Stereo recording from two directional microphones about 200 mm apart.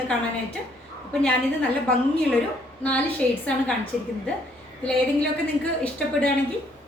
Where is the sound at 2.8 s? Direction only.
5° left (ahead or behind).